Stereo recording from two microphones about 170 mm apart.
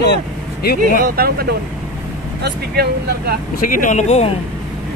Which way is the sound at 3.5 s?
55° left (ahead or behind).